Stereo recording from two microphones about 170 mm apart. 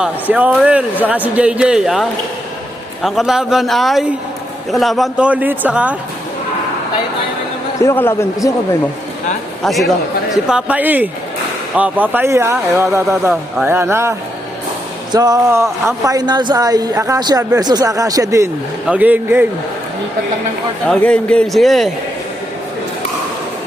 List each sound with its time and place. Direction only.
0.0 s a man's voice: 10° right (ahead or behind)
7.8 s a man's voice: 15° left (ahead or behind)
9.6 s a man's voice: centre (ahead or behind); by 18.4 s 20° right (ahead or behind)
18.9 s a man's voice: 10° right (ahead or behind)
20.8 s a man's voice: 5° left (ahead or behind)